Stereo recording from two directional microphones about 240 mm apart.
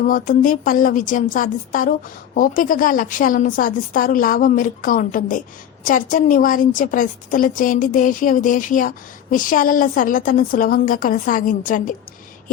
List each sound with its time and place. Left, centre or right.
0.0 s a woman's voice: left